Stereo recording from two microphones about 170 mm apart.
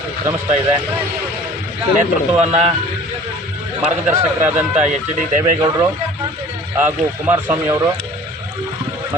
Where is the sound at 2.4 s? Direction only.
40° right (ahead or behind).